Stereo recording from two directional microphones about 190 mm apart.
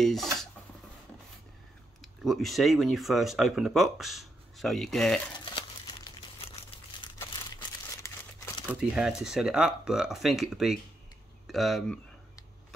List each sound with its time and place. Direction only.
0.0 s speech: centre (ahead or behind)
2.0 s speech: centre (ahead or behind)
5.4 s crumpling: 25° left (ahead or behind)
8.0 s crumpling: 15° left (ahead or behind)
8.9 s speech: 5° right (ahead or behind)